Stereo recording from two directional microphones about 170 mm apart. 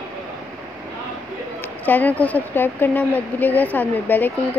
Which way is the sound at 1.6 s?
10° left (ahead or behind).